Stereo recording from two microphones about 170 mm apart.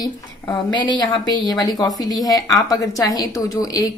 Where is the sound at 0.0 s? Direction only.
25° left (ahead or behind).